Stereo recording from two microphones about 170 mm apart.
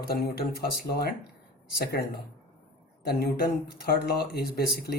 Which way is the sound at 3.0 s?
70° left (ahead or behind).